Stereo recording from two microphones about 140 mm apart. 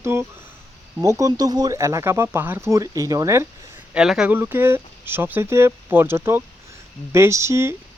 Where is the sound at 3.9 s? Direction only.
5° right (ahead or behind).